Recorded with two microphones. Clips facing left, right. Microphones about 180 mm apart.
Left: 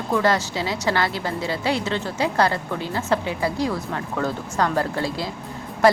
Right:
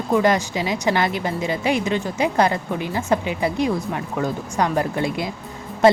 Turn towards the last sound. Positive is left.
turn(degrees=-25)  # may be behind; listen again after turning